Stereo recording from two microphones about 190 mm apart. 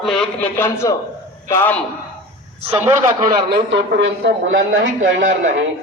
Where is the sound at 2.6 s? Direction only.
10° right (ahead or behind).